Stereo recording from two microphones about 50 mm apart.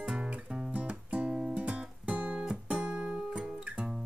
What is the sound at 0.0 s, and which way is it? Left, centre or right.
Music, centre.